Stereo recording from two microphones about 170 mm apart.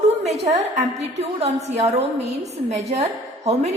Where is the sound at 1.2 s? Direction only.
40° right (ahead or behind).